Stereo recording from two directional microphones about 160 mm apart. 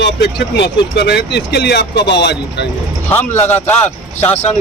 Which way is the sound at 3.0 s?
10° left (ahead or behind).